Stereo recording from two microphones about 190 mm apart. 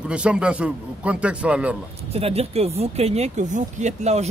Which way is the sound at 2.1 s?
30° right (ahead or behind).